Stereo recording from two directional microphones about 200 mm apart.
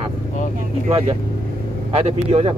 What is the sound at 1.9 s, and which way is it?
Speech, 30° right (ahead or behind).